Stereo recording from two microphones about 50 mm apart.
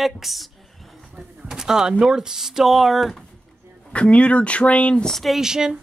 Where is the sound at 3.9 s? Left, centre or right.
Left.